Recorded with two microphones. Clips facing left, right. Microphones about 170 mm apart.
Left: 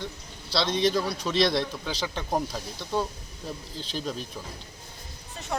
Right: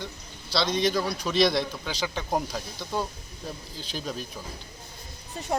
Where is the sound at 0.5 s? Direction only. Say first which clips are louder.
Even; centre (ahead or behind).